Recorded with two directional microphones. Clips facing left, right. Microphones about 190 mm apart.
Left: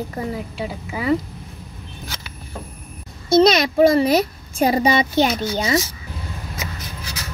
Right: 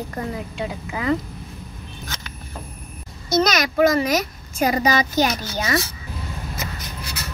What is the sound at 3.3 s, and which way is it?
A child's voice, 30° left (ahead or behind).